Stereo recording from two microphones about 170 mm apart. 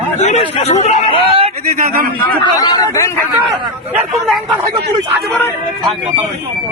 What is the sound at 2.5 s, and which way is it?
Speech, 25° left (ahead or behind).